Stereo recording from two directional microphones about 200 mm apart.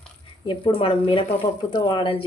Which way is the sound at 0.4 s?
25° left (ahead or behind).